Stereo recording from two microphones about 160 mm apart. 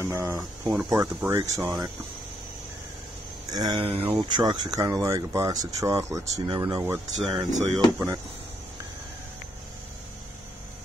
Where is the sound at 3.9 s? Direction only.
35° right (ahead or behind); by 6.4 s 20° right (ahead or behind).